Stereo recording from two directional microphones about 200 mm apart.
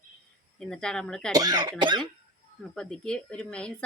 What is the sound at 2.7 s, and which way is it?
Speech, 5° left (ahead or behind).